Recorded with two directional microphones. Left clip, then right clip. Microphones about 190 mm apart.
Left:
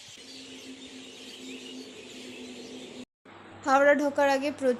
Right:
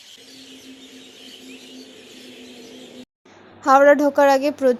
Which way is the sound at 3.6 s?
25° right (ahead or behind).